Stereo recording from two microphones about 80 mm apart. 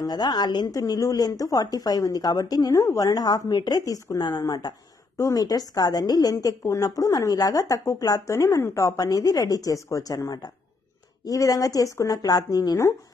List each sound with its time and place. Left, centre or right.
0.0 s a woman's voice: left
0.7 s a woman's voice: left
4.2 s a woman's voice: left
5.1 s a woman's voice: left